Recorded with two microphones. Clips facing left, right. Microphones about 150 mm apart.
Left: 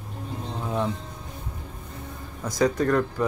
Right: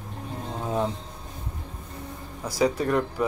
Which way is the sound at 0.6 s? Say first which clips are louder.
Right 1 dB; 25° right (ahead or behind).